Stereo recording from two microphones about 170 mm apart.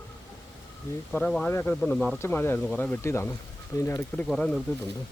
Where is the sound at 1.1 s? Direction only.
5° left (ahead or behind).